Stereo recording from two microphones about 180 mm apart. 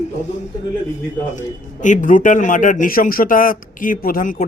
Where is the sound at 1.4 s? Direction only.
45° left (ahead or behind).